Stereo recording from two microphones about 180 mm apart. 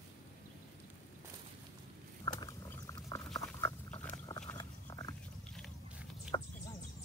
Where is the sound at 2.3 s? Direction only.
20° left (ahead or behind).